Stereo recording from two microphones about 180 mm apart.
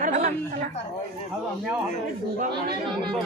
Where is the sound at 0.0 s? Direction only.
45° right (ahead or behind).